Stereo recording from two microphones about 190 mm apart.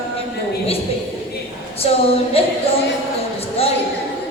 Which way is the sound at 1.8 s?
30° left (ahead or behind).